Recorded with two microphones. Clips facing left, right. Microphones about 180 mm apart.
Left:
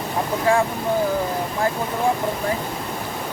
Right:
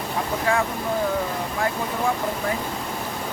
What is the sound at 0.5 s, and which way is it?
Speech, 30° left (ahead or behind).